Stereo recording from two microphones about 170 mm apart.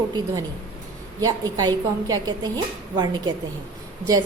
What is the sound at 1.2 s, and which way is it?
A woman's voice, 20° right (ahead or behind).